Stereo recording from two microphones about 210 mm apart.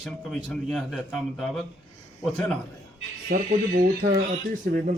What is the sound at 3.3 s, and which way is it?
Speech, 45° right (ahead or behind).